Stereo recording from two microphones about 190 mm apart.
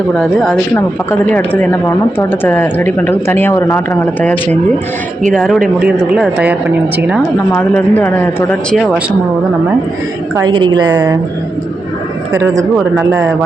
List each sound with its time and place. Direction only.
0.2 s speech: 5° left (ahead or behind)
5.3 s speech: centre (ahead or behind)
7.5 s speech: 10° left (ahead or behind)
10.3 s a woman's voice: 25° right (ahead or behind)
12.3 s speech: 15° right (ahead or behind)